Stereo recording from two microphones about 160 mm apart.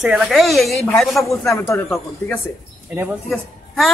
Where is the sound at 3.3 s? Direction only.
Centre (ahead or behind).